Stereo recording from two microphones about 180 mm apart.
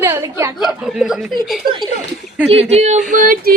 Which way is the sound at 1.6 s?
25° right (ahead or behind).